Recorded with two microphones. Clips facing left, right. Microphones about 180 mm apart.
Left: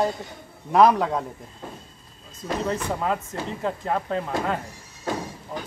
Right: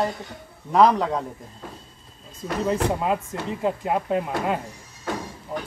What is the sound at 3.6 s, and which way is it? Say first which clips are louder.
Speech: right 3 dB; 10° right (ahead or behind).